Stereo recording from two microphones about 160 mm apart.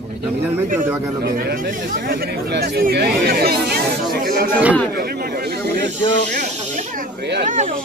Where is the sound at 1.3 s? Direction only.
60° right (ahead or behind); by 5.6 s 80° right.